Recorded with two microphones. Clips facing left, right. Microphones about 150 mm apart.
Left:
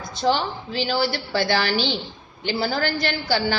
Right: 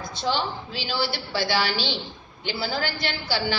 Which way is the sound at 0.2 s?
50° left (ahead or behind).